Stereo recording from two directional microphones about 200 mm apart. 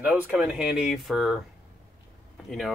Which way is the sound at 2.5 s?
Centre (ahead or behind).